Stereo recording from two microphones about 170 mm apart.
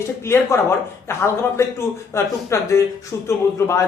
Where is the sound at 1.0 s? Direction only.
15° left (ahead or behind).